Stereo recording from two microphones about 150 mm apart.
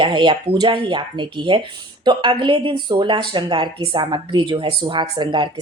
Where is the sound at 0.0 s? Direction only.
30° right (ahead or behind).